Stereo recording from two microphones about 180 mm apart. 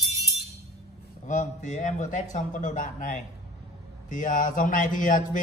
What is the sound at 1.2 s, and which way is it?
A man's voice, 45° left (ahead or behind).